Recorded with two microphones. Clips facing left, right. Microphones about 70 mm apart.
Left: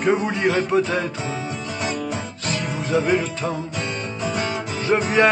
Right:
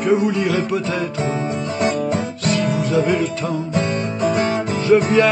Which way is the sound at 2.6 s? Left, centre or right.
Left.